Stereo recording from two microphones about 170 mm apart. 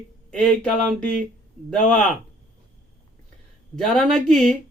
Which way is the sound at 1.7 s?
5° left (ahead or behind).